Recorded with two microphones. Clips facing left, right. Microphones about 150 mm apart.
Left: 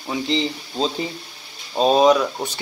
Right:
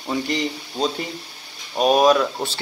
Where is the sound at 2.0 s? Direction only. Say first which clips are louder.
Left 1 dB; 15° left (ahead or behind).